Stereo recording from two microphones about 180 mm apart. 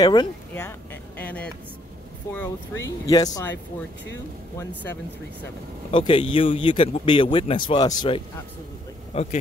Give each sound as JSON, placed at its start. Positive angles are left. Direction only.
{"t": 0.0, "sound": "speech", "side_deg": 20}
{"t": 1.2, "sound": "a sound", "side_deg": 10}
{"t": 2.3, "sound": "speech", "side_deg": 15}
{"t": 5.9, "sound": "speech", "side_deg": 30}
{"t": 9.1, "sound": "speech", "side_deg": 40}